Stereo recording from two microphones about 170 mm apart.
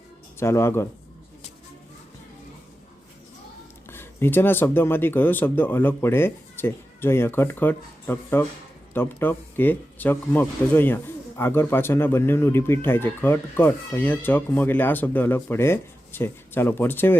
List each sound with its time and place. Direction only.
0.3 s speech: 15° left (ahead or behind)
3.8 s speech: 15° left (ahead or behind)